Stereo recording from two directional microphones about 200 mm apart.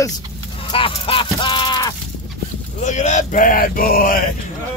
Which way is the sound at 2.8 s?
35° left (ahead or behind).